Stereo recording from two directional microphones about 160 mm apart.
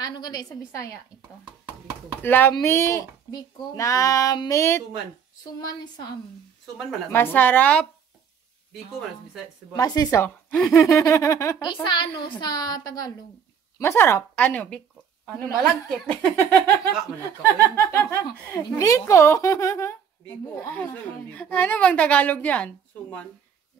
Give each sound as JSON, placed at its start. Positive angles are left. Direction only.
{"t": 0.0, "sound": "speech", "side_deg": 25}
{"t": 2.2, "sound": "speech", "side_deg": 15}
{"t": 7.1, "sound": "speech", "side_deg": 10}
{"t": 9.8, "sound": "speech", "side_deg": 25}
{"t": 10.1, "sound": "speech", "side_deg": 10}
{"t": 11.7, "sound": "speech", "side_deg": 30}